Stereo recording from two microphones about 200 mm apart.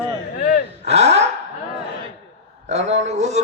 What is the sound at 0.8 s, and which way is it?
Speech, 30° right (ahead or behind).